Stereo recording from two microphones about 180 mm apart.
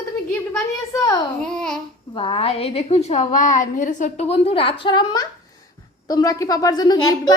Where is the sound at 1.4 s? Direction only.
5° left (ahead or behind).